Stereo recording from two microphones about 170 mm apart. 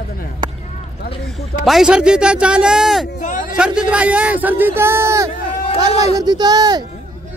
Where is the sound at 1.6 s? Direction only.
5° right (ahead or behind); by 6.8 s 25° right (ahead or behind).